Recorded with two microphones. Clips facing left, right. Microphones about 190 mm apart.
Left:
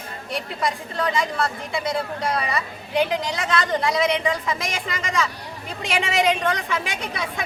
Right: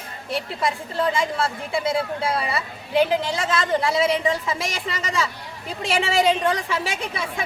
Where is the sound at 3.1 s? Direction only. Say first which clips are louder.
Right 1 dB; 30° right (ahead or behind).